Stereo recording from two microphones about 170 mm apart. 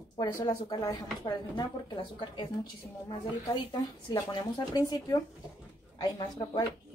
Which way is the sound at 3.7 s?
20° left (ahead or behind).